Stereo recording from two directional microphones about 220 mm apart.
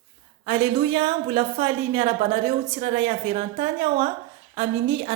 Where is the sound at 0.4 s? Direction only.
25° right (ahead or behind).